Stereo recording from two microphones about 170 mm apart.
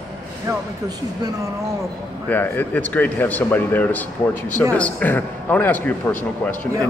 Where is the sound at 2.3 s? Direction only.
10° left (ahead or behind).